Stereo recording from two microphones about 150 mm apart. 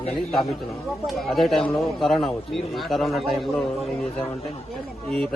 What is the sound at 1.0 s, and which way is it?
Speech, centre (ahead or behind).